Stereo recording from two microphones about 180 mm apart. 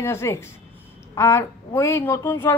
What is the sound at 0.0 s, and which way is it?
A woman's voice, 15° left (ahead or behind).